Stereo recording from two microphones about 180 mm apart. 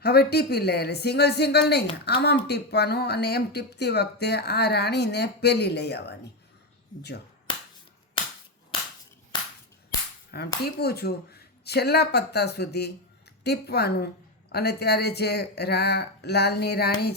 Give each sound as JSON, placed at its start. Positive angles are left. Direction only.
{"t": 0.0, "sound": "a woman's voice", "side_deg": 60}
{"t": 10.3, "sound": "a woman's voice", "side_deg": 65}